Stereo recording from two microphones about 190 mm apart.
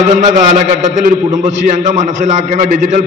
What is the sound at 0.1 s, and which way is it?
A man's voice, 40° right (ahead or behind).